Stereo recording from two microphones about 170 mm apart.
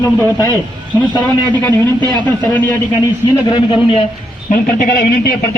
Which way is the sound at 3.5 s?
30° left (ahead or behind).